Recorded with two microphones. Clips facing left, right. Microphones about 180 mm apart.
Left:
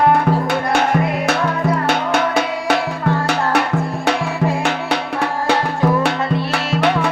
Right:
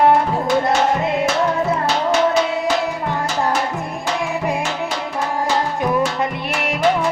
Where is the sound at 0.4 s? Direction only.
60° left (ahead or behind).